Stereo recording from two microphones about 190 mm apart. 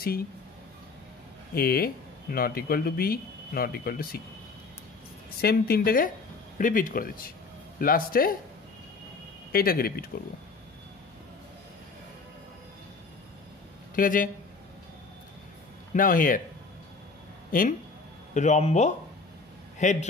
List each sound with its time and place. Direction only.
1.5 s speech: 50° left (ahead or behind)
5.4 s speech: 55° left (ahead or behind)
9.5 s speech: 50° left (ahead or behind)
13.9 s speech: 45° left (ahead or behind)
15.9 s speech: 45° left (ahead or behind)
17.5 s a man's voice: 45° left (ahead or behind)